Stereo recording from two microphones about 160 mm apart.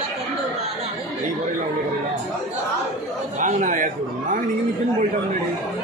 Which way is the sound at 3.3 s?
50° right (ahead or behind).